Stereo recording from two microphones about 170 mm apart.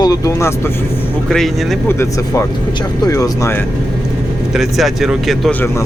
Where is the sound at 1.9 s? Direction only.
15° left (ahead or behind).